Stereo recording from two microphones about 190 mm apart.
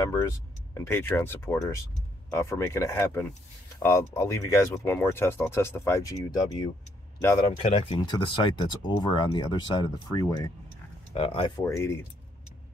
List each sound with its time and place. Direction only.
0.0 s speech: 15° left (ahead or behind)
7.2 s speech: 15° left (ahead or behind)
7.4 s speech: 30° left (ahead or behind)
11.1 s speech: 30° left (ahead or behind)
11.6 s speech: 15° left (ahead or behind)